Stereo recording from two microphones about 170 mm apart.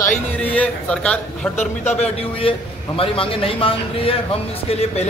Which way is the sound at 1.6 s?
40° left (ahead or behind).